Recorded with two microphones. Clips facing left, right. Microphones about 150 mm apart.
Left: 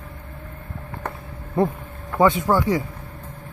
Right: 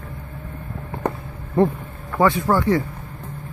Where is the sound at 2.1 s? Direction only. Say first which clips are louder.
Even; 20° left (ahead or behind).